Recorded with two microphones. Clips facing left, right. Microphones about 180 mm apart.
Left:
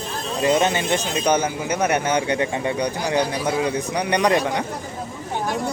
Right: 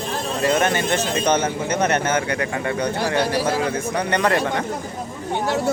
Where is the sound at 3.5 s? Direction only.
15° left (ahead or behind).